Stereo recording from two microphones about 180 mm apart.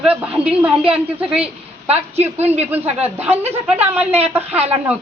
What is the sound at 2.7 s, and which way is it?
A man's voice, 10° right (ahead or behind).